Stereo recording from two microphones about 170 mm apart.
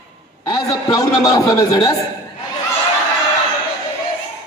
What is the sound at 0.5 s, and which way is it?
A man's voice, 20° left (ahead or behind).